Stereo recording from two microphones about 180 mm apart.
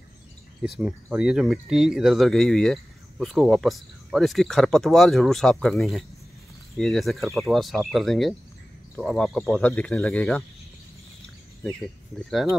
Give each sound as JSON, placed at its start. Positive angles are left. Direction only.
{"t": 0.6, "sound": "speech", "side_deg": -5}
{"t": 12.3, "sound": "speech", "side_deg": 0}